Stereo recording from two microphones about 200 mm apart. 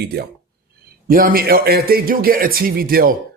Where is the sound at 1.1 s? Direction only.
45° right (ahead or behind).